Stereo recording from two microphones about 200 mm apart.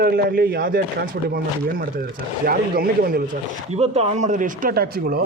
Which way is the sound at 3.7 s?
30° right (ahead or behind).